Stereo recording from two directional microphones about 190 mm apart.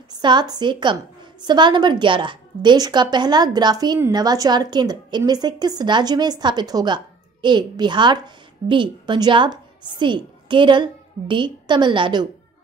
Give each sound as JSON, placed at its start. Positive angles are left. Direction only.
{"t": 0.1, "sound": "a woman's voice", "side_deg": -25}